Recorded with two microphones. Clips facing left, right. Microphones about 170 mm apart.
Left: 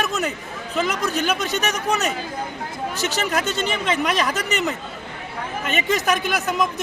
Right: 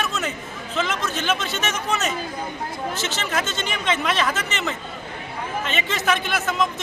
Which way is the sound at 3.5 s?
35° left (ahead or behind).